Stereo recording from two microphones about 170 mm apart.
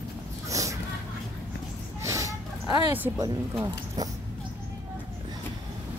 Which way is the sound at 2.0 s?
20° right (ahead or behind).